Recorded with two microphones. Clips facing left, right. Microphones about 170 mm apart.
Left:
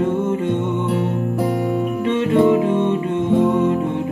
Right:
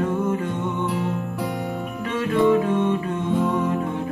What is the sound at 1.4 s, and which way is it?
Music, 45° left (ahead or behind).